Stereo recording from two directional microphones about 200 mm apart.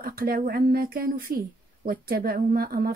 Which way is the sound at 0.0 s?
45° right (ahead or behind).